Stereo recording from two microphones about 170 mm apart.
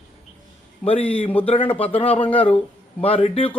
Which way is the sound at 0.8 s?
35° left (ahead or behind).